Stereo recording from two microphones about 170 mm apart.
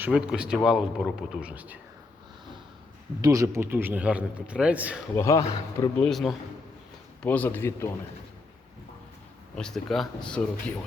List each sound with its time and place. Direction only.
0.0 s a man's voice: 5° right (ahead or behind)
3.2 s a man's voice: 20° right (ahead or behind)
5.1 s speech: 20° left (ahead or behind)
6.0 s a man's voice: centre (ahead or behind)
9.6 s a man's voice: 5° left (ahead or behind)